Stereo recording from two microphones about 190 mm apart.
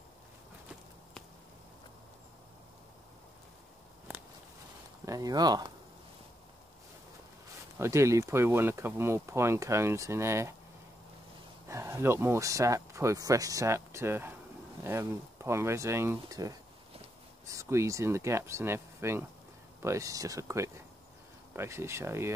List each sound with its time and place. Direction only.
5.0 s speech: 20° right (ahead or behind)
7.8 s speech: 15° right (ahead or behind)
11.6 s speech: 15° right (ahead or behind)